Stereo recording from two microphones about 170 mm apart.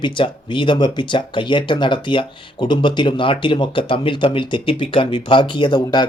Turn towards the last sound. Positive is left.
turn(degrees=25)  # may be behind; listen again after turning